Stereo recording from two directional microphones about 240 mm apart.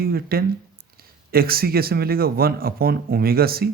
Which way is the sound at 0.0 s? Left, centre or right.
Right.